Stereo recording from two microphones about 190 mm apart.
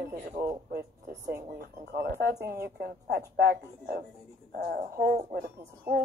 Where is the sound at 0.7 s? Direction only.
55° right (ahead or behind).